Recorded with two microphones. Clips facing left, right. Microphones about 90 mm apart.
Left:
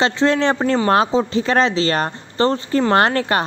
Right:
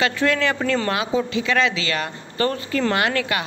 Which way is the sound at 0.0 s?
30° left (ahead or behind).